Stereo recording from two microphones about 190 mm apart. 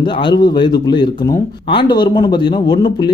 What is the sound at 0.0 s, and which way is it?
Speech, 25° left (ahead or behind).